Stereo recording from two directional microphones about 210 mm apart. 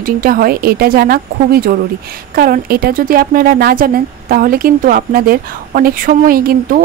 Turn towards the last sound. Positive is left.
turn(degrees=-45)  # may be behind; listen again after turning